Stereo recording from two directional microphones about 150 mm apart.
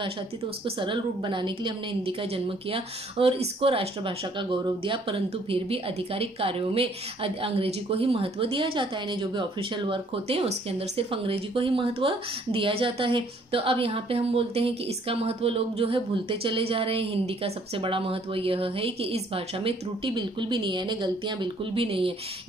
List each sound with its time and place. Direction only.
0.7 s a woman's voice: 35° right (ahead or behind)